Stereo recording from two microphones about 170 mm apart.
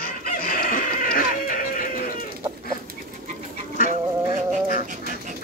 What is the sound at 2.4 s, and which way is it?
Bird, 20° right (ahead or behind).